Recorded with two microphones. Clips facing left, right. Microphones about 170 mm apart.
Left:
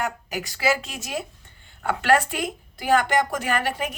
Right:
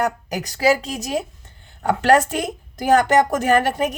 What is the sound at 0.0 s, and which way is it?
A woman's voice, 40° right (ahead or behind).